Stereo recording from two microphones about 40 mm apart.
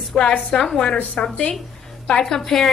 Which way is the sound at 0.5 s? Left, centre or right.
Left.